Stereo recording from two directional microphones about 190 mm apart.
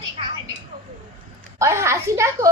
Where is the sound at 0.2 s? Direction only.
30° right (ahead or behind).